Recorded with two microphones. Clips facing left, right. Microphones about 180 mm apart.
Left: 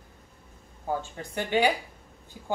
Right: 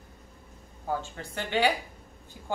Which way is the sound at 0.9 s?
15° left (ahead or behind).